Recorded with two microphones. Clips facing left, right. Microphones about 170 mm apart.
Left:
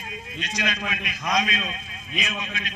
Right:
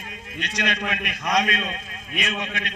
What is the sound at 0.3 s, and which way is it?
A man's voice, 65° right (ahead or behind).